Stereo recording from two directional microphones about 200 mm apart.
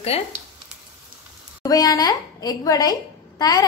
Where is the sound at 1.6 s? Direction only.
20° left (ahead or behind).